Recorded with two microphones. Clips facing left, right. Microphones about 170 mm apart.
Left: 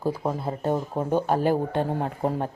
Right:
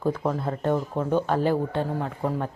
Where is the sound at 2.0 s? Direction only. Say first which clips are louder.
Left 1 dB; 35° left (ahead or behind).